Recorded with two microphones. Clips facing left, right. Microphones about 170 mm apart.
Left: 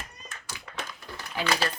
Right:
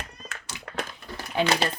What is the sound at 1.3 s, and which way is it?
Speech, 25° right (ahead or behind).